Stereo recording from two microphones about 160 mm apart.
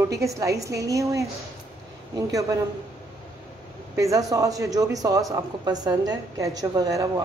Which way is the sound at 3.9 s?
20° right (ahead or behind).